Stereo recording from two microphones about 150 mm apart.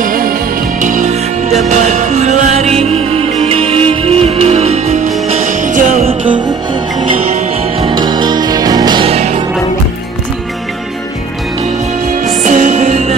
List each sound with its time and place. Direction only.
0.0 s music: 70° right (ahead or behind); by 6.1 s 50° right (ahead or behind)
7.8 s music: 30° right (ahead or behind)
9.1 s music: 45° right (ahead or behind)
12.4 s music: 50° right (ahead or behind)